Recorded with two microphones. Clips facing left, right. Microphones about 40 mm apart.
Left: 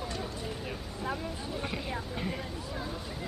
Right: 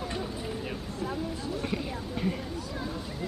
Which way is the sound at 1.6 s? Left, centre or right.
Centre.